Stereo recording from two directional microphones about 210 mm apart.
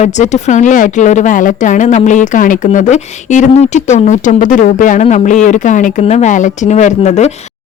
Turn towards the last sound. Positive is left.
turn(degrees=35)  # may be behind; listen again after turning